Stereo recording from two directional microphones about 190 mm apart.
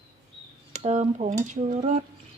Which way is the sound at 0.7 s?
35° right (ahead or behind).